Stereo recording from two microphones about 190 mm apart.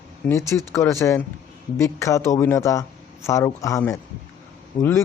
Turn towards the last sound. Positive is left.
turn(degrees=15)  # may be behind; listen again after turning